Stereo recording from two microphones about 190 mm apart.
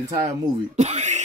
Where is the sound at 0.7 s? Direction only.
35° right (ahead or behind).